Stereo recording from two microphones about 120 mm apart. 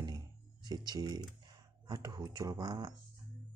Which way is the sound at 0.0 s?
35° right (ahead or behind).